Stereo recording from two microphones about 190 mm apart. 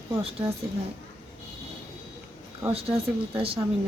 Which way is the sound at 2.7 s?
30° right (ahead or behind).